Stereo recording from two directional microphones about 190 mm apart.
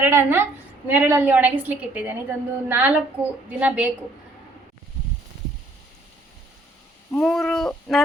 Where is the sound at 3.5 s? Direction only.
5° right (ahead or behind).